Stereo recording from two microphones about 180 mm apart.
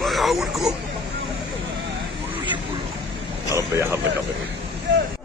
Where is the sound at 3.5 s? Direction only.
15° right (ahead or behind).